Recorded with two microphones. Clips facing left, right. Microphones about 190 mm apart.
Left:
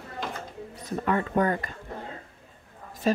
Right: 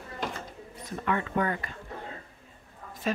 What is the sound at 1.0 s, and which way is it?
Speech, 40° left (ahead or behind).